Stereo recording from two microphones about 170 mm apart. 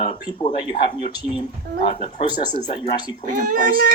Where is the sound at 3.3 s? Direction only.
55° right (ahead or behind).